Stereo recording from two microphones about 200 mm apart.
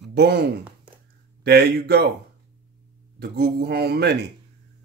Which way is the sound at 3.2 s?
50° right (ahead or behind).